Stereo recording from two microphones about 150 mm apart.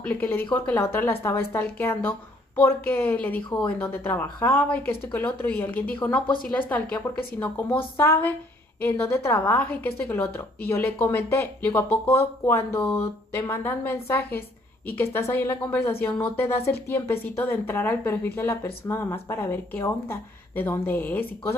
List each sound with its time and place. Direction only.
0.0 s a woman's voice: 10° left (ahead or behind)